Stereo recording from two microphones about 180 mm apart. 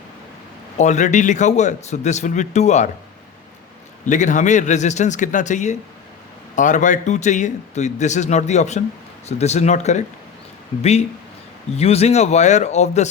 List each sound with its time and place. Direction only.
0.8 s a man's voice: 40° left (ahead or behind)
4.0 s a man's voice: 45° left (ahead or behind)
11.8 s a man's voice: 35° left (ahead or behind)